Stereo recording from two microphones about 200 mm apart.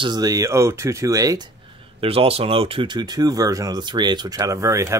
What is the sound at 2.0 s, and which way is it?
Speech, 30° right (ahead or behind).